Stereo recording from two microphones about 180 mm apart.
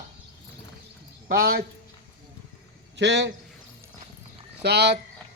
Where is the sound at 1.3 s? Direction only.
60° right (ahead or behind).